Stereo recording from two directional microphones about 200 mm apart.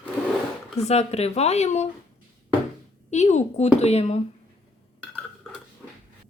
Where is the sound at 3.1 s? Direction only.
35° left (ahead or behind).